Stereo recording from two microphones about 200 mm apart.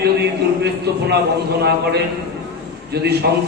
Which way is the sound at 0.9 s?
55° right (ahead or behind).